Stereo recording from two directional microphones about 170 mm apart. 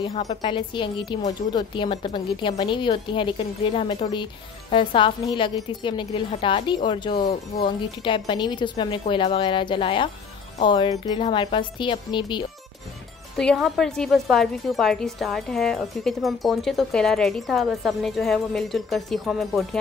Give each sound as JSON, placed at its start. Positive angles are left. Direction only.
{"t": 0.0, "sound": "a woman's voice", "side_deg": 35}
{"t": 13.4, "sound": "a woman's voice", "side_deg": 0}